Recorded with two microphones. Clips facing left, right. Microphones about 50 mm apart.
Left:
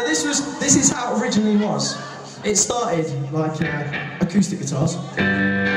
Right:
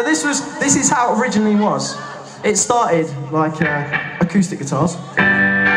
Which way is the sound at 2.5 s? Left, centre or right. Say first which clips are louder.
Right 6 dB; right.